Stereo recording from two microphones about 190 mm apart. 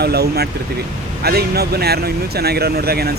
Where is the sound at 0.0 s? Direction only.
60° right (ahead or behind).